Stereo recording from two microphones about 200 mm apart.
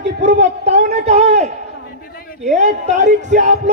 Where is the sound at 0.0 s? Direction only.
60° right (ahead or behind).